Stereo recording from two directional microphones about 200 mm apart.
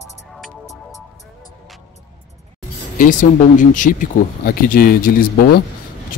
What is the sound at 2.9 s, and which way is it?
Speech, 40° left (ahead or behind).